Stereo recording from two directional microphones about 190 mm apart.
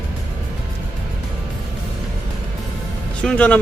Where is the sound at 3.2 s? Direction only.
5° left (ahead or behind).